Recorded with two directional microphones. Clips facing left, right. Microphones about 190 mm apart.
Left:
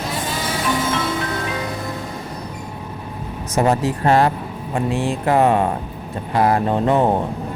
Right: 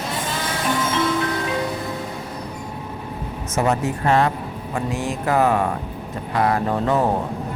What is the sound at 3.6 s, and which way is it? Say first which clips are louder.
Speech: left 3 dB; 35° left (ahead or behind).